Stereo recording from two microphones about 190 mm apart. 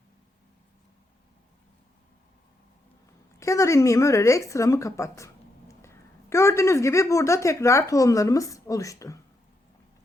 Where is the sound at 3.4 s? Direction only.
15° left (ahead or behind).